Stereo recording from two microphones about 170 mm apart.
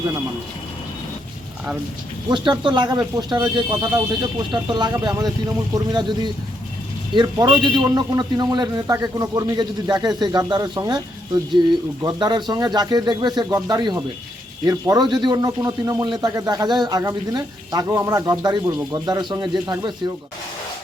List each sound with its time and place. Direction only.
2.3 s speech: 30° right (ahead or behind)
12.0 s speech: 25° right (ahead or behind)